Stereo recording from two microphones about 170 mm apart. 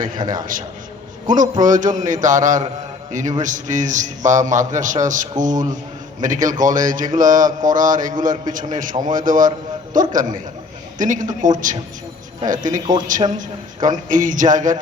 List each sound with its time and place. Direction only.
0.2 s a man's voice: 25° right (ahead or behind)
1.6 s a man's voice: 50° right (ahead or behind)